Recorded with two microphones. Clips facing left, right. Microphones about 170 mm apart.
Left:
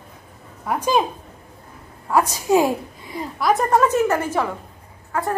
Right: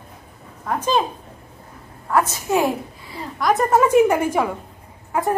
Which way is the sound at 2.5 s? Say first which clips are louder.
Left 4 dB; 15° left (ahead or behind).